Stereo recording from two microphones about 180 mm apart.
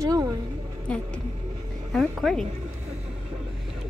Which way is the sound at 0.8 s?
5° left (ahead or behind).